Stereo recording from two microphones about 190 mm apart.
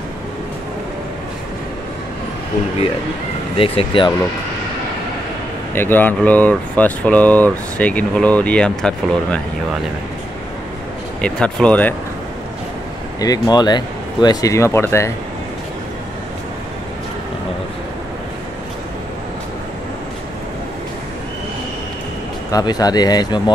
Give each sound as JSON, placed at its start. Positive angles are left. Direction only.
{"t": 3.5, "sound": "speech", "side_deg": 30}
{"t": 5.8, "sound": "speech", "side_deg": 10}
{"t": 11.1, "sound": "speech", "side_deg": 5}
{"t": 13.2, "sound": "speech", "side_deg": 20}
{"t": 22.5, "sound": "speech", "side_deg": 20}